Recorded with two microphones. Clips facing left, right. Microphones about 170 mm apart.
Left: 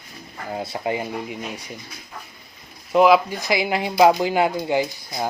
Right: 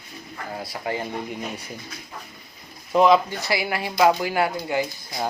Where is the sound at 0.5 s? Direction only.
25° left (ahead or behind).